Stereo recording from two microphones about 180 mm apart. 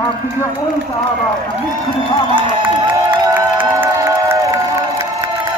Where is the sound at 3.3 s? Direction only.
10° right (ahead or behind).